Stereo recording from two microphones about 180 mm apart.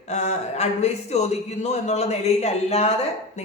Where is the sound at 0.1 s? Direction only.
40° left (ahead or behind).